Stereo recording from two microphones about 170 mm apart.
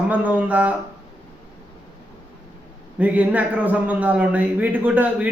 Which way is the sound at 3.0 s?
10° right (ahead or behind).